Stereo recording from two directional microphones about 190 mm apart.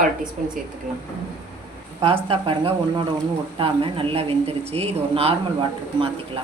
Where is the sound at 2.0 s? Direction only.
30° right (ahead or behind).